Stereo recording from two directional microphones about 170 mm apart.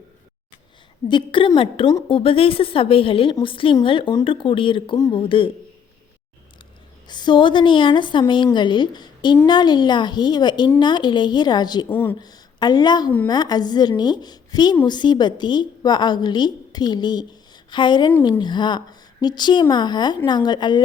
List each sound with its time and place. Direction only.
1.0 s a woman's voice: 30° left (ahead or behind)
7.1 s a woman's voice: 25° left (ahead or behind)
11.9 s a woman's voice: 15° left (ahead or behind)